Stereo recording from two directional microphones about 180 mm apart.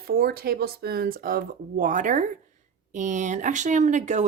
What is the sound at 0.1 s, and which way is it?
Speech, 60° right (ahead or behind).